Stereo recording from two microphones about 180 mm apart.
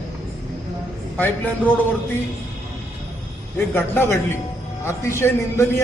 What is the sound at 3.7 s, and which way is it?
A man's voice, 10° left (ahead or behind).